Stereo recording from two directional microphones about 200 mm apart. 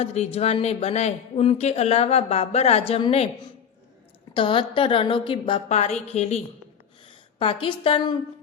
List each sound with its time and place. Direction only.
0.0 s speech: 30° left (ahead or behind)
4.4 s a woman's voice: 25° left (ahead or behind)